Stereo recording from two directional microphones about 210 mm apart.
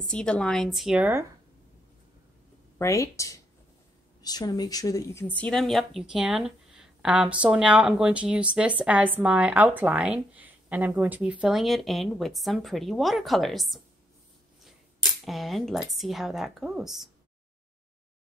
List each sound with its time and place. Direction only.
0.0 s a woman's voice: 5° left (ahead or behind)
2.8 s a woman's voice: 15° left (ahead or behind)
15.2 s a woman's voice: centre (ahead or behind)